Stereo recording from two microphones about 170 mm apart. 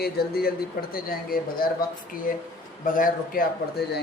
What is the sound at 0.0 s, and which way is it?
Speech, 65° left (ahead or behind).